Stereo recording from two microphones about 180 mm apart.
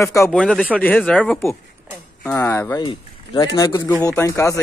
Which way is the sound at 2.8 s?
25° left (ahead or behind).